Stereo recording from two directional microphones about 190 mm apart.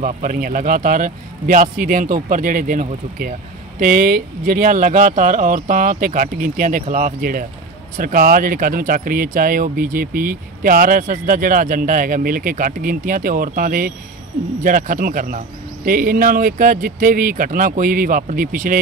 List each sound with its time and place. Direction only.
0.0 s speech: 40° right (ahead or behind)